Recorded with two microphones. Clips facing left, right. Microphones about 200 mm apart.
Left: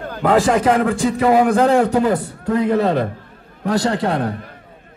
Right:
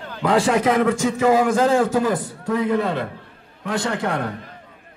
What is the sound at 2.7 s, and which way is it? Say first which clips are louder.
A man's voice: left 5 dB; 40° left (ahead or behind).